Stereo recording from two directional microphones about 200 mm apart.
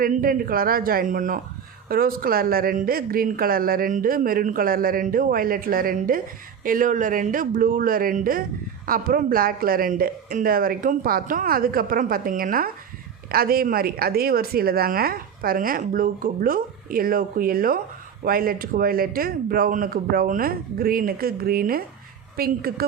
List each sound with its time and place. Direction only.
0.0 s a woman's voice: 45° right (ahead or behind)